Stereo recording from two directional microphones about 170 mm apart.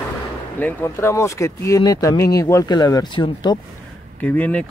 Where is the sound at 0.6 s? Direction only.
10° left (ahead or behind).